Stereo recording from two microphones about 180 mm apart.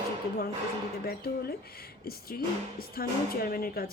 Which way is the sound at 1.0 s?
60° left (ahead or behind).